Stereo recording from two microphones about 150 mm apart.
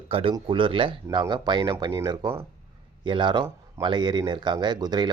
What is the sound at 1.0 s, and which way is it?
Speech, 25° right (ahead or behind).